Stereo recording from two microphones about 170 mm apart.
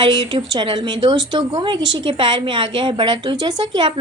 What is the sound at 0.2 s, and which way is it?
A woman's voice, 30° right (ahead or behind).